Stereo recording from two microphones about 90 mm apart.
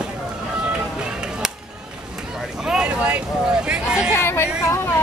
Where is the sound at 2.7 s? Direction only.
10° right (ahead or behind).